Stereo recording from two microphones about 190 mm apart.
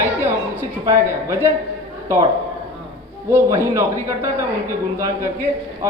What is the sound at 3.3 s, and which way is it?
Speech, 15° right (ahead or behind).